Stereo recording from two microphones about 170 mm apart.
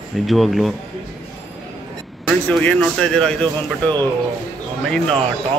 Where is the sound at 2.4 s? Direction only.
10° left (ahead or behind).